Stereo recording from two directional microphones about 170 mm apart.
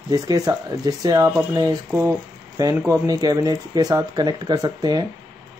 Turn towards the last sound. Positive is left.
turn(degrees=-25)  # may be behind; listen again after turning